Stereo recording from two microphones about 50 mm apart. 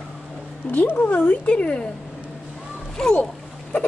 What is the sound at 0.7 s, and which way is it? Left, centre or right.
Speech, left.